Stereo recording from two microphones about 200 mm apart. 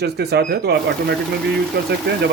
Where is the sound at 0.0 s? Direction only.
55° right (ahead or behind).